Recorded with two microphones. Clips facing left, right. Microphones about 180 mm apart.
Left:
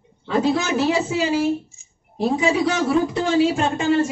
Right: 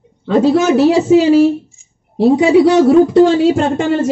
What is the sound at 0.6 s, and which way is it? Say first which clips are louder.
A woman's voice: right 10 dB; 75° right (ahead or behind).